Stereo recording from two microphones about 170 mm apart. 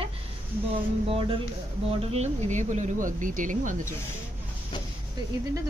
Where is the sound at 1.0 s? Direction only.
35° right (ahead or behind); by 3.9 s 50° right (ahead or behind).